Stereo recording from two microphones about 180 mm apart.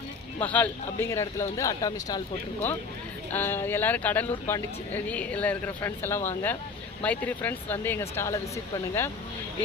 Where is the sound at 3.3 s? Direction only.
10° left (ahead or behind).